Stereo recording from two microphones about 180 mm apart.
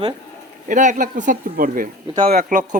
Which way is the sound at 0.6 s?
45° right (ahead or behind).